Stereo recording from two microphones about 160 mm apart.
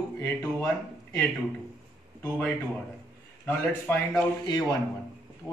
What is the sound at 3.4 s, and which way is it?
Speech, 10° left (ahead or behind).